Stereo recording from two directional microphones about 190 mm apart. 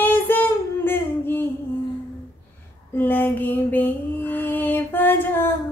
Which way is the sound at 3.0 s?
10° left (ahead or behind).